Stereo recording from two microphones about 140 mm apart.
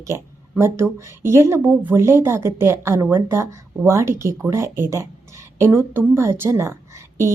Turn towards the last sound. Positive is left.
turn(degrees=-20)  # may be behind; listen again after turning